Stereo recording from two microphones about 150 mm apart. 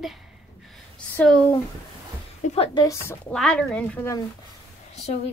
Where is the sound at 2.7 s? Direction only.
20° left (ahead or behind).